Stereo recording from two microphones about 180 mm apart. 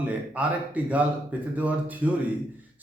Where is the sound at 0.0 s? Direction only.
10° right (ahead or behind).